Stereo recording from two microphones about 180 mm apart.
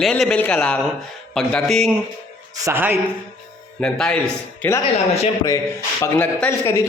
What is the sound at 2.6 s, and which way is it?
Speech, 10° right (ahead or behind).